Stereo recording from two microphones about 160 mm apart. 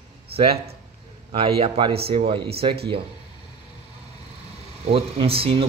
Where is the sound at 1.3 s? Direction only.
35° right (ahead or behind).